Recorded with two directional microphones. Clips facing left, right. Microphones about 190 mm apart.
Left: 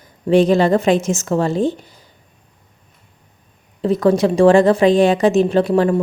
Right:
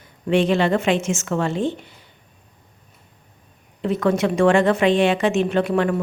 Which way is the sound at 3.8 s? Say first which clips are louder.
Left 5 dB; 35° left (ahead or behind).